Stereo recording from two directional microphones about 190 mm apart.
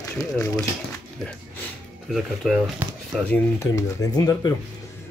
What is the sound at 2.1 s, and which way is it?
Speech, centre (ahead or behind).